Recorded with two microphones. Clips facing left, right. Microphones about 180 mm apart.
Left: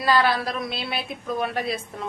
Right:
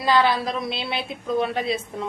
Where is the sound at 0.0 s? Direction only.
20° right (ahead or behind).